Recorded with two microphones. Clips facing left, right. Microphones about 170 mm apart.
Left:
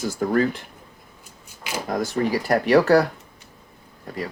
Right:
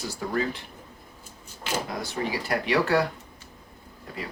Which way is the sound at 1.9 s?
50° left (ahead or behind).